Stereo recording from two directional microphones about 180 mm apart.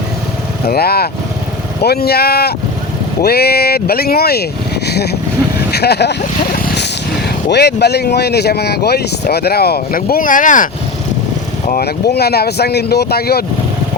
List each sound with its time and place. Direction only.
0.7 s speech: 60° left (ahead or behind)
7.5 s speech: 65° left (ahead or behind); by 10.7 s 45° left (ahead or behind)
11.7 s speech: 60° left (ahead or behind)